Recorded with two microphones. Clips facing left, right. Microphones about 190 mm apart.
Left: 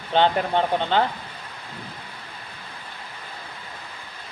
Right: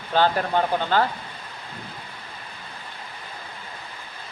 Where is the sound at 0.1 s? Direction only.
25° left (ahead or behind).